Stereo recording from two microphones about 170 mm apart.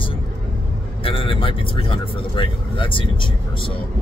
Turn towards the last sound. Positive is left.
turn(degrees=30)  # may be behind; listen again after turning